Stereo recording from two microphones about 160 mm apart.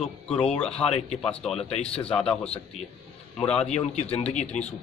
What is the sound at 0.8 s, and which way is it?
Speech, 40° left (ahead or behind).